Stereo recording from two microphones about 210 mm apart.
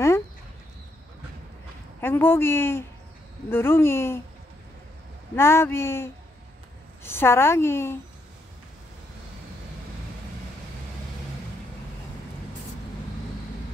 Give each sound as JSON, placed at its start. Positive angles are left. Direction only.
{"t": 2.0, "sound": "a woman's voice", "side_deg": 10}
{"t": 5.3, "sound": "a woman's voice", "side_deg": 10}